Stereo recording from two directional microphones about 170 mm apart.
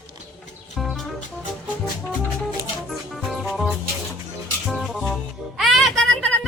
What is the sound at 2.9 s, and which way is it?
Music, centre (ahead or behind).